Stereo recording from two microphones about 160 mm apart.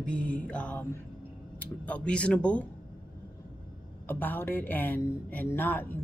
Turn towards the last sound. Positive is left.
turn(degrees=10)  # may be behind; listen again after turning